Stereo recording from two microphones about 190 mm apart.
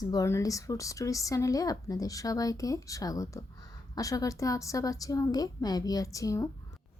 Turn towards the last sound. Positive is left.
turn(degrees=15)  # may be behind; listen again after turning